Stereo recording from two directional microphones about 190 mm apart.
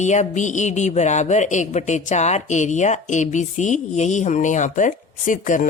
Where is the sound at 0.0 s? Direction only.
40° left (ahead or behind).